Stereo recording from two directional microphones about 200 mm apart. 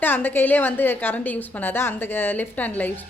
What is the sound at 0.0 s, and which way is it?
A woman's voice, 10° left (ahead or behind).